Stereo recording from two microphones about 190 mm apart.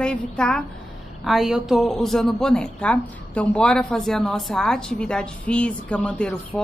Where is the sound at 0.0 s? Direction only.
5° left (ahead or behind).